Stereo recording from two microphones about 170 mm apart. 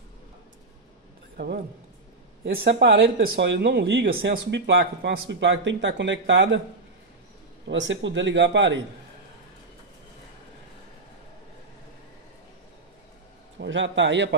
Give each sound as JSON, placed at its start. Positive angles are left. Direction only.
{"t": 1.3, "sound": "a man's voice", "side_deg": -70}
{"t": 2.4, "sound": "speech", "side_deg": -90}
{"t": 7.6, "sound": "speech", "side_deg": -90}
{"t": 13.6, "sound": "speech", "side_deg": -90}